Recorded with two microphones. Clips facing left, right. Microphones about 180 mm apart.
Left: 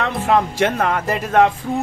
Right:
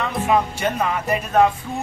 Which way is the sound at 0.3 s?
80° left.